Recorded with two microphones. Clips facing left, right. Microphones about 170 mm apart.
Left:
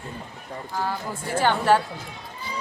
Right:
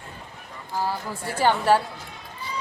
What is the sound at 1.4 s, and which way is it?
Speech, 10° right (ahead or behind).